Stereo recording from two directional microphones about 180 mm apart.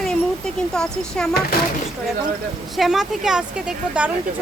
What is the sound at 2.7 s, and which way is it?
Speech, centre (ahead or behind).